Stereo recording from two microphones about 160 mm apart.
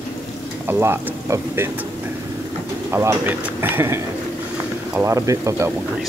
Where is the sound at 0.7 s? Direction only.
15° right (ahead or behind).